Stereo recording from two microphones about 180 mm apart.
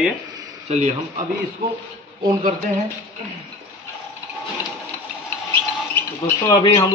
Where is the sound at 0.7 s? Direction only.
40° right (ahead or behind).